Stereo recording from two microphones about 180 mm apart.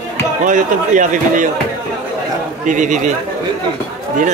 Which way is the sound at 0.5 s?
45° right (ahead or behind).